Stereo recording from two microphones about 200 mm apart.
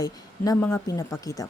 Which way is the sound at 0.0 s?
15° left (ahead or behind).